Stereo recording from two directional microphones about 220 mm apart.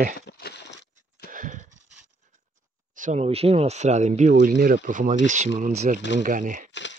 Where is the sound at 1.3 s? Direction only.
35° right (ahead or behind).